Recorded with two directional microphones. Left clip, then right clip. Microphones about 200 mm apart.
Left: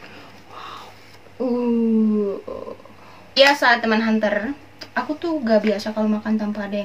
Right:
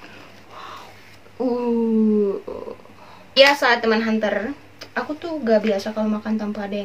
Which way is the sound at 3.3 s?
10° right (ahead or behind).